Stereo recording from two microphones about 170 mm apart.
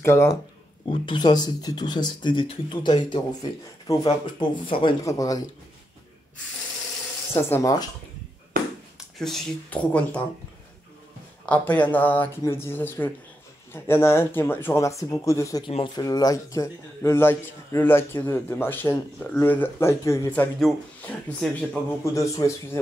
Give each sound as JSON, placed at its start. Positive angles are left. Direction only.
{"t": 0.0, "sound": "speech", "side_deg": 15}
{"t": 0.8, "sound": "speech", "side_deg": 30}
{"t": 7.3, "sound": "speech", "side_deg": 15}
{"t": 8.5, "sound": "a sound", "side_deg": -55}
{"t": 9.2, "sound": "speech", "side_deg": 5}
{"t": 11.4, "sound": "speech", "side_deg": 10}
{"t": 22.1, "sound": "speech", "side_deg": 20}